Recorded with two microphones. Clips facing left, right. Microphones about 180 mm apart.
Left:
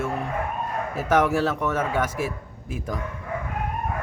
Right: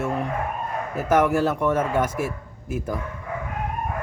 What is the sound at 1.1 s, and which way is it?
Speech, 10° right (ahead or behind).